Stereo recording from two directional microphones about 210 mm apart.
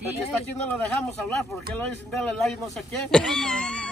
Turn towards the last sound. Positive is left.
turn(degrees=5)  # may be behind; listen again after turning